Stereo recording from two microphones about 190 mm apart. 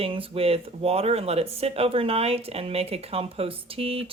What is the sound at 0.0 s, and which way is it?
Speech, 30° right (ahead or behind).